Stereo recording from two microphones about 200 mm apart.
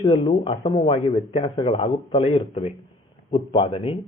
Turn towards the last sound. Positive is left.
turn(degrees=30)  # may be behind; listen again after turning